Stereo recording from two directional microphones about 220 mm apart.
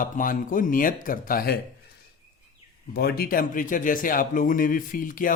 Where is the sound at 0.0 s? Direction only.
40° left (ahead or behind).